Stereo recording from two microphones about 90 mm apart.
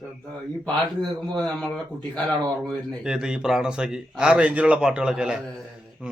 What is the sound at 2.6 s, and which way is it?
Speech, 5° right (ahead or behind).